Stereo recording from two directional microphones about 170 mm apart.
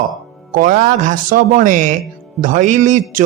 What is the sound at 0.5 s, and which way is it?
A man's voice, 50° right (ahead or behind).